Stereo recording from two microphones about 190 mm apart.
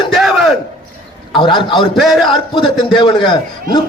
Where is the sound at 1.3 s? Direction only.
25° left (ahead or behind).